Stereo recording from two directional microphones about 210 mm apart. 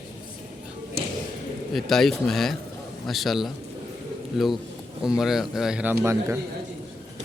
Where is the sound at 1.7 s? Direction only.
Centre (ahead or behind).